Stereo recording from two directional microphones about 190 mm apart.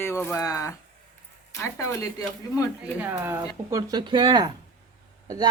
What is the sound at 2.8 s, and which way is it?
Speech, 10° right (ahead or behind).